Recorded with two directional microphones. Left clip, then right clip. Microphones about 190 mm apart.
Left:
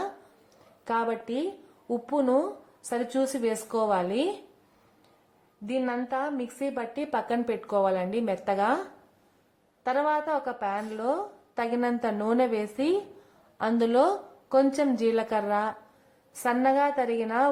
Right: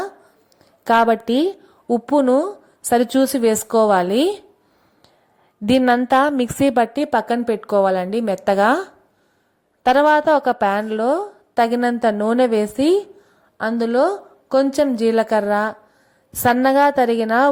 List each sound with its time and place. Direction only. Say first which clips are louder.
0.9 s a woman's voice: right 13 dB; 35° right (ahead or behind)
5.6 s a woman's voice: right 14 dB; 45° right (ahead or behind)
9.8 s a woman's voice: right 13 dB; 35° right (ahead or behind)
13.6 s a woman's voice: right 6 dB; 20° right (ahead or behind)